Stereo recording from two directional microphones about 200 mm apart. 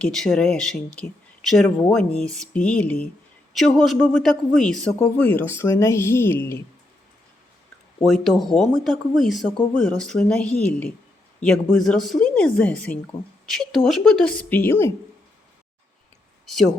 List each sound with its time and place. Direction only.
0.0 s speech: 5° left (ahead or behind)
8.0 s speech: centre (ahead or behind)